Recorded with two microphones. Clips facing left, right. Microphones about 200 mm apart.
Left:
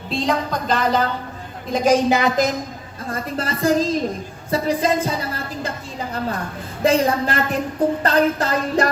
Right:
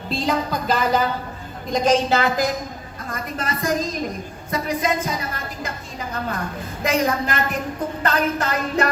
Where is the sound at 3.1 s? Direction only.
30° left (ahead or behind).